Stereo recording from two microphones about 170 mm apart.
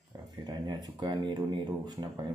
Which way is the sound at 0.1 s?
20° right (ahead or behind).